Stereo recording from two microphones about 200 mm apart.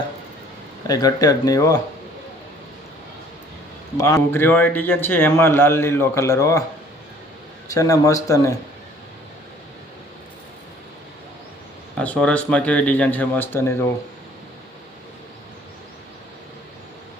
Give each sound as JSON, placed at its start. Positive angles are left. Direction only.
{"t": 0.9, "sound": "a man's voice", "side_deg": 20}
{"t": 3.9, "sound": "a man's voice", "side_deg": 15}
{"t": 7.7, "sound": "a man's voice", "side_deg": 15}
{"t": 11.9, "sound": "a man's voice", "side_deg": 5}